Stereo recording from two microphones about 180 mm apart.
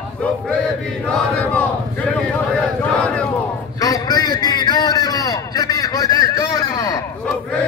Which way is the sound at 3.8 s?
20° left (ahead or behind).